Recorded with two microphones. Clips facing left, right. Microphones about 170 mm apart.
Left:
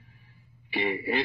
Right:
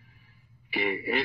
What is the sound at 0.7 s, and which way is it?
Speech, 30° left (ahead or behind).